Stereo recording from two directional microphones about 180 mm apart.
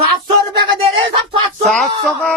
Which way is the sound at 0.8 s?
30° right (ahead or behind).